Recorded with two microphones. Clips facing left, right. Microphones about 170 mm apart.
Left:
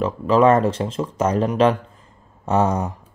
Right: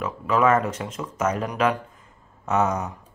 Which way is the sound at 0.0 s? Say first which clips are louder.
Left 6 dB; 30° left (ahead or behind).